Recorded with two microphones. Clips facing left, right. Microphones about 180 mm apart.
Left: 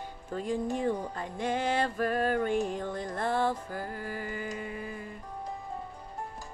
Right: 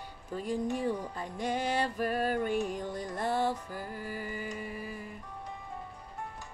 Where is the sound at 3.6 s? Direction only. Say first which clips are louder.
Left 3 dB; 50° left (ahead or behind).